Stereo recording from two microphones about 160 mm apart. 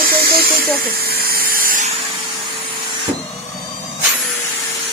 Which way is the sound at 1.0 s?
75° right (ahead or behind).